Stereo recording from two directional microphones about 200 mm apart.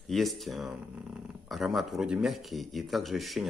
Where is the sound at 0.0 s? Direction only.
Centre (ahead or behind).